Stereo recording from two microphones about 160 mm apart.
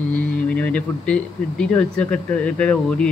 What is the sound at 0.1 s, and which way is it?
Speech, 5° left (ahead or behind).